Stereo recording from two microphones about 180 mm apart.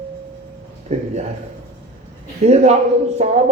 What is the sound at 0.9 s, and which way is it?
Speech, 35° right (ahead or behind).